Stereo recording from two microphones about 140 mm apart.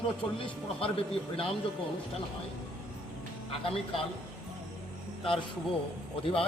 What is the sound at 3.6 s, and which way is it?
Speech, 40° left (ahead or behind).